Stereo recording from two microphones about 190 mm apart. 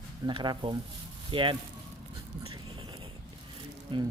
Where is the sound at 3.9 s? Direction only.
25° right (ahead or behind).